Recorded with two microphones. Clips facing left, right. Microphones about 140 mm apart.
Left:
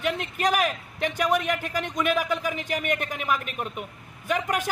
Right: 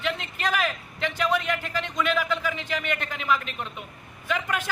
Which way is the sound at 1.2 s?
45° left (ahead or behind).